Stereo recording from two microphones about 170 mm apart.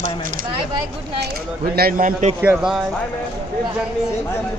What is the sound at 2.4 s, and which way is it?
Speech, 10° right (ahead or behind).